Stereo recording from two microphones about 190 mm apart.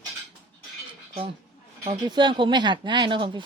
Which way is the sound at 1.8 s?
25° right (ahead or behind).